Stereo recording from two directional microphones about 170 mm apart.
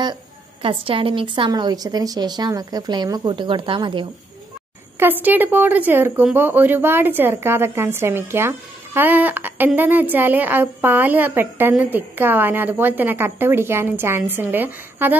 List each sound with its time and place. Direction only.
0.0 s a woman's voice: 30° right (ahead or behind)
4.9 s speech: 10° right (ahead or behind)